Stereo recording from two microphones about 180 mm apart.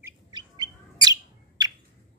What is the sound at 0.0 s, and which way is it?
Chirp, 25° right (ahead or behind).